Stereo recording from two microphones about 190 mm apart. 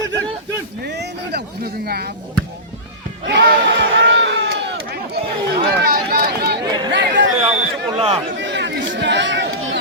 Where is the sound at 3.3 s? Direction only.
65° right (ahead or behind).